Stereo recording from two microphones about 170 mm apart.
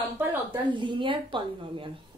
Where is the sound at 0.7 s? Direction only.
30° right (ahead or behind).